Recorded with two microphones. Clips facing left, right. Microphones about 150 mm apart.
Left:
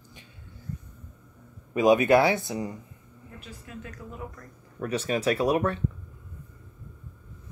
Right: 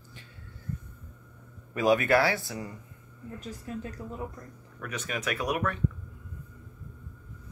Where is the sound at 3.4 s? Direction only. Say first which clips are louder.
Right 5 dB; 40° right (ahead or behind).